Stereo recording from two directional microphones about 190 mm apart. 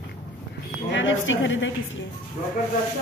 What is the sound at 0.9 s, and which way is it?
Speech, 80° left.